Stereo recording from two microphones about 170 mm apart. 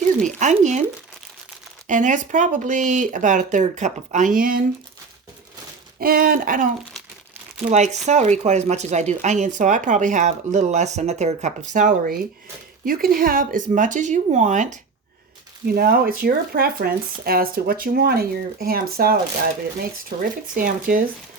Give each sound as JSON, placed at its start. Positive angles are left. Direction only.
{"t": 0.2, "sound": "speech", "side_deg": -45}
{"t": 1.9, "sound": "speech", "side_deg": -50}
{"t": 6.0, "sound": "speech", "side_deg": -60}
{"t": 7.7, "sound": "speech", "side_deg": -45}
{"t": 15.6, "sound": "speech", "side_deg": -60}